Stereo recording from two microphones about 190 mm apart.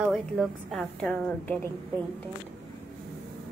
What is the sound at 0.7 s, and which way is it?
A woman's voice, 5° left (ahead or behind).